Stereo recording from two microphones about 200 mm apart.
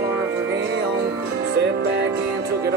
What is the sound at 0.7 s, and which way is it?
Music, 55° right (ahead or behind).